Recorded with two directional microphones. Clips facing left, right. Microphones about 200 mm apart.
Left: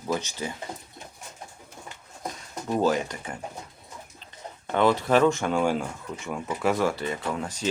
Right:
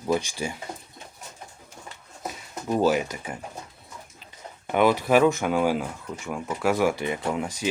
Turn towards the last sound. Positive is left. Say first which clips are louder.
# right 2 dB
turn(degrees=-10)  # may be behind; listen again after turning